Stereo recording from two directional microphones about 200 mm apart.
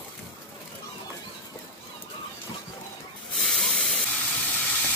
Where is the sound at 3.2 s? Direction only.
Centre (ahead or behind).